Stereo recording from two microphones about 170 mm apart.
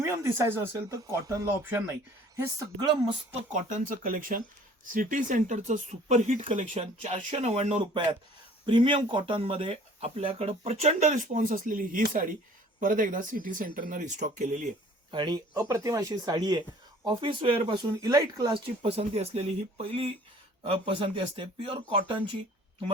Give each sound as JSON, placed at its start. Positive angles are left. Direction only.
{"t": 0.0, "sound": "speech", "side_deg": -15}
{"t": 3.5, "sound": "speech", "side_deg": -50}
{"t": 15.1, "sound": "speech", "side_deg": -25}
{"t": 18.0, "sound": "speech", "side_deg": -20}